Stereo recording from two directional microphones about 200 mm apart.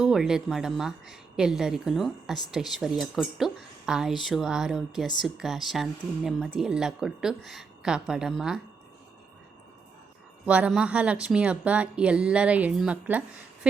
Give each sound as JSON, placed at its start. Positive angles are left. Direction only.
{"t": 0.0, "sound": "a woman's voice", "side_deg": -5}
{"t": 10.4, "sound": "a woman's voice", "side_deg": -5}